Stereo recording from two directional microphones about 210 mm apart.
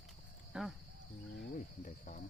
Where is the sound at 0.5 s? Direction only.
5° right (ahead or behind).